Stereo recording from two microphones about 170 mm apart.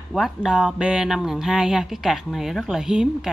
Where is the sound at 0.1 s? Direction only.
Centre (ahead or behind).